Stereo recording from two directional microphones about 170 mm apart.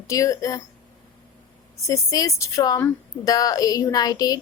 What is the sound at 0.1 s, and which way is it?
Speech, 20° left (ahead or behind).